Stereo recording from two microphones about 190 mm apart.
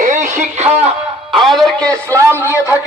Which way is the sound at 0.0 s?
40° right (ahead or behind).